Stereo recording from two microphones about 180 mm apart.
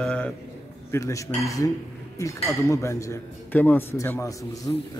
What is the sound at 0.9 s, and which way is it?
A man's voice, 15° left (ahead or behind).